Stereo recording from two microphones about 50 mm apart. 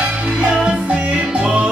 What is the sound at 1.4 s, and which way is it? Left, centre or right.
Music, centre.